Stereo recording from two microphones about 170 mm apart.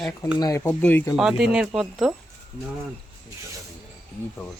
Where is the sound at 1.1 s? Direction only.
5° right (ahead or behind).